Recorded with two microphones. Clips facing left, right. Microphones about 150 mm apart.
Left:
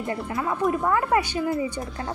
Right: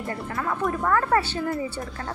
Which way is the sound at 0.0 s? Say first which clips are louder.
Left 2 dB; 20° left (ahead or behind).